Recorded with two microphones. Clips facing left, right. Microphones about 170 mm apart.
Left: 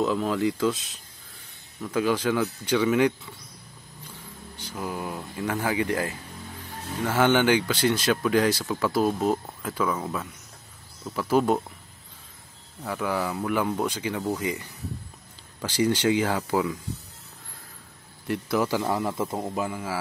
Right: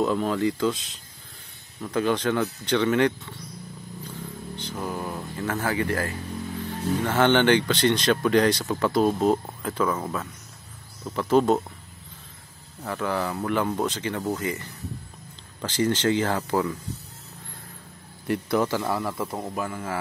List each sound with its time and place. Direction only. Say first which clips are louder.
0.0 s speech: right 1 dB; centre (ahead or behind)
1.9 s speech: even; 10° left (ahead or behind)
4.6 s speech: right 1 dB; 10° left (ahead or behind)
12.8 s speech: even; 10° left (ahead or behind)
18.2 s speech: right 2 dB; centre (ahead or behind)
18.7 s speech: left 1 dB; 15° left (ahead or behind)